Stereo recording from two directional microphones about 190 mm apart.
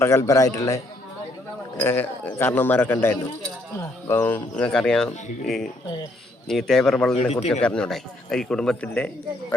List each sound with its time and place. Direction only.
0.0 s speech: 15° left (ahead or behind)
1.8 s speech: 10° left (ahead or behind)
7.2 s a man's voice: 35° left (ahead or behind)
7.6 s speech: 5° left (ahead or behind)